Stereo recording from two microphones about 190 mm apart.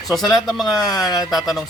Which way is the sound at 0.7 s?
20° left (ahead or behind).